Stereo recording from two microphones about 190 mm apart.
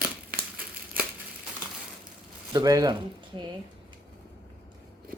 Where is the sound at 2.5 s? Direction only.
20° right (ahead or behind).